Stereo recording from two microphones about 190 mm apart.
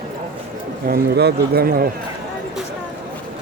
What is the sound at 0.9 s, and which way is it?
A man's voice, 55° right (ahead or behind).